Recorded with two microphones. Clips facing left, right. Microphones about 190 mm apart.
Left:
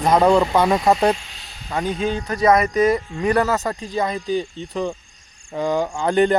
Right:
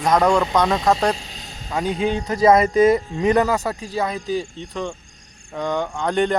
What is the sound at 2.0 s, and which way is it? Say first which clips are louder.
Speech: right 3 dB; 20° right (ahead or behind).